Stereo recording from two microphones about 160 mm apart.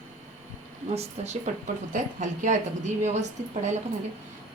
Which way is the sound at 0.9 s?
45° right (ahead or behind).